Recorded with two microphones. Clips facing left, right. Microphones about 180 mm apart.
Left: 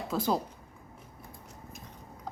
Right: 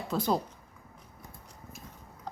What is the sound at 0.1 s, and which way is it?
Speech, centre (ahead or behind).